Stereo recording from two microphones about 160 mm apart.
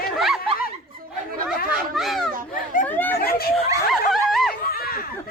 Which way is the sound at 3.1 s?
70° left (ahead or behind).